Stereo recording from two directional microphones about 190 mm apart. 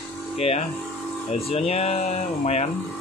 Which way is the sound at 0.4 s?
30° left (ahead or behind).